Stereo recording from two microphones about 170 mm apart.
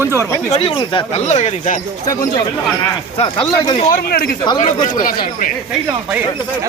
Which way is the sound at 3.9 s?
65° left (ahead or behind).